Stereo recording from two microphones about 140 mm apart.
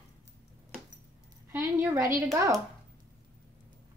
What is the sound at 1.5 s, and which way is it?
A woman's voice, 20° right (ahead or behind).